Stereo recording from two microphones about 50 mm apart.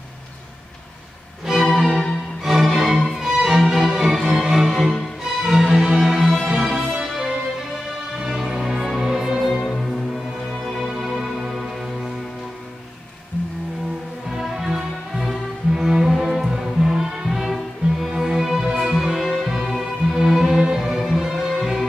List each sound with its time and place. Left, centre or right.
1.5 s music: centre
8.2 s music: centre
14.3 s music: centre